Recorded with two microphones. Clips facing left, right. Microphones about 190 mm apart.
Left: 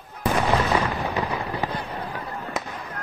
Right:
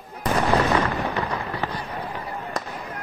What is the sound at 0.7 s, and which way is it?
Fireworks, 10° left (ahead or behind).